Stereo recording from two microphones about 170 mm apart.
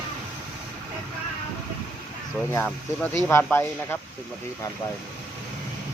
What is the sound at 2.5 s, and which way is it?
Speech, 15° left (ahead or behind).